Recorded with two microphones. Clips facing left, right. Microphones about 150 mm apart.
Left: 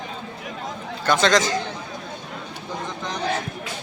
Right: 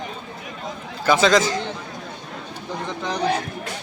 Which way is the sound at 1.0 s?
5° right (ahead or behind).